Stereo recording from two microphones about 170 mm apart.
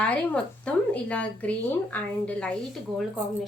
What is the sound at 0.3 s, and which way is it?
Speech, 5° left (ahead or behind).